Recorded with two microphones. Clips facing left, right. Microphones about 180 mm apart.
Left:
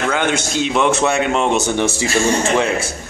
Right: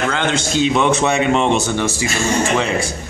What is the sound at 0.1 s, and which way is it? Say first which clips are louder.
A man's voice: even; 10° left (ahead or behind).